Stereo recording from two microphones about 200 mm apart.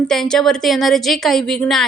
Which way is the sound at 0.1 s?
Centre (ahead or behind).